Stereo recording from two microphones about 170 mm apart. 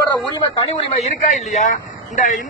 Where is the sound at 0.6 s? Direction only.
40° left (ahead or behind).